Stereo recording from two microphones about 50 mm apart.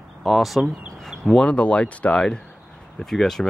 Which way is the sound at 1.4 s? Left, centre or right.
Left.